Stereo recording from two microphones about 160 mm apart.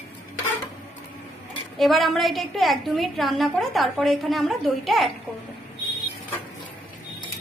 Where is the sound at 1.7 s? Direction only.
Centre (ahead or behind).